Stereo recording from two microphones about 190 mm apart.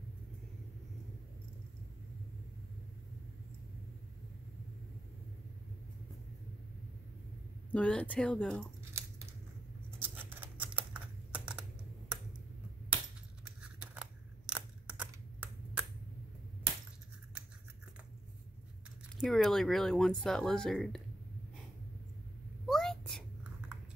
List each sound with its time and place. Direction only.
7.7 s speech: 5° left (ahead or behind)
9.8 s typing: 10° right (ahead or behind)
12.9 s crushing: 5° right (ahead or behind)
19.1 s speech: centre (ahead or behind)
22.7 s whispering: centre (ahead or behind)